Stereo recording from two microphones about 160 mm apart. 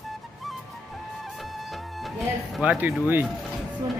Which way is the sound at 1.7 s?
Centre (ahead or behind).